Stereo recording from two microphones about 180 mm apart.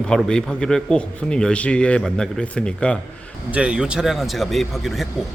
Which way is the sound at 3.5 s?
5° right (ahead or behind).